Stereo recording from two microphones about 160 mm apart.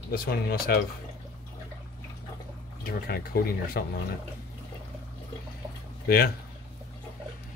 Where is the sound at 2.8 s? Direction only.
70° left (ahead or behind).